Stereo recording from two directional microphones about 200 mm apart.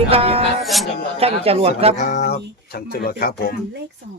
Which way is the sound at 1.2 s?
30° right (ahead or behind).